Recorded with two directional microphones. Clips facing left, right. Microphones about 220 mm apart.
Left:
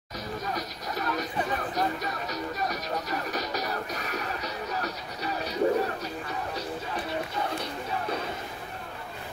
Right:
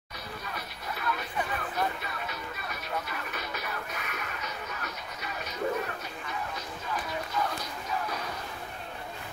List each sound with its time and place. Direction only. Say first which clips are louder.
0.5 s music: left 5 dB; 40° left (ahead or behind)